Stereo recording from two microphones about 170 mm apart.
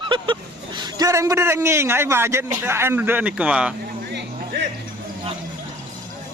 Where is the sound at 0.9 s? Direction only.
20° right (ahead or behind).